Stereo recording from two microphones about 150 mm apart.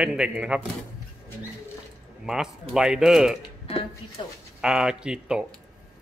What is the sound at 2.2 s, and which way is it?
Speech, 5° right (ahead or behind).